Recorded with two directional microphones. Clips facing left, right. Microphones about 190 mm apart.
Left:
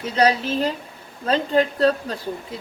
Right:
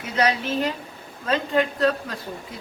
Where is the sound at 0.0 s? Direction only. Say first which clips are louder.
Left 4 dB; 30° left (ahead or behind).